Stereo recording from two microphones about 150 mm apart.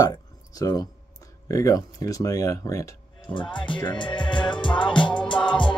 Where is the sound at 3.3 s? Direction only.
30° left (ahead or behind).